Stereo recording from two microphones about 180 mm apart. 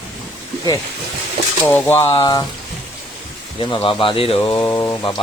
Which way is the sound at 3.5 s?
30° left (ahead or behind).